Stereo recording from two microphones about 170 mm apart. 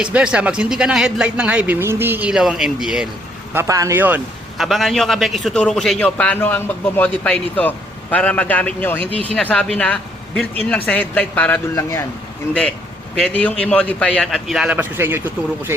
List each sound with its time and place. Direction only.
0.0 s a man's voice: 5° right (ahead or behind)
3.5 s a man's voice: 15° right (ahead or behind); by 12.0 s 15° left (ahead or behind)
13.2 s a man's voice: 5° left (ahead or behind); by 15.7 s 10° right (ahead or behind)